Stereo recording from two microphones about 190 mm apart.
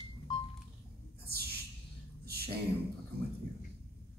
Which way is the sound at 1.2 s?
55° right (ahead or behind).